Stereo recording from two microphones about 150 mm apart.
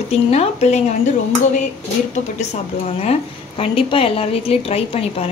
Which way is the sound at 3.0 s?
40° left (ahead or behind).